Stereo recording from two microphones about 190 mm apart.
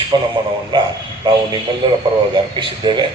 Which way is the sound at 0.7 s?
25° right (ahead or behind).